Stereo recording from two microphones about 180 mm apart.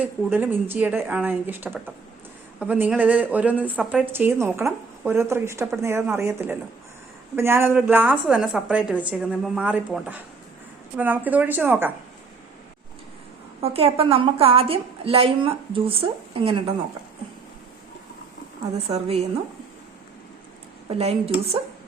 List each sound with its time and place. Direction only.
0.0 s a woman's voice: 10° right (ahead or behind)
13.6 s a woman's voice: 35° right (ahead or behind)
18.8 s a woman's voice: 35° right (ahead or behind)